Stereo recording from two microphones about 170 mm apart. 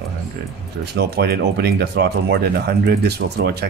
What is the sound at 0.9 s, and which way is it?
Speech, 75° right (ahead or behind).